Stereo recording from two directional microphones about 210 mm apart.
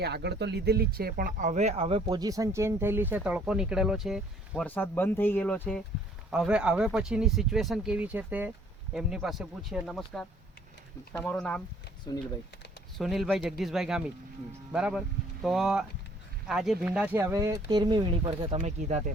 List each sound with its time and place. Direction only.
0.0 s speech: 50° right (ahead or behind); by 11.6 s 5° left (ahead or behind)
13.0 s speech: centre (ahead or behind); by 19.1 s 35° right (ahead or behind)